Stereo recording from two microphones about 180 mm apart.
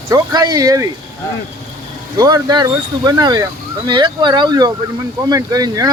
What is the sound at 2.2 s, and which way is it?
Speech, 20° right (ahead or behind).